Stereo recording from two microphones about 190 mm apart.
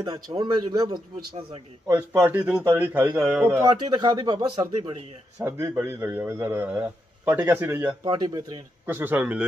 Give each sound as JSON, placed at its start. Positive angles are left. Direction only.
{"t": 0.0, "sound": "a man's voice", "side_deg": -20}
{"t": 1.9, "sound": "a man's voice", "side_deg": -10}
{"t": 5.4, "sound": "a man's voice", "side_deg": -15}
{"t": 8.0, "sound": "a man's voice", "side_deg": -20}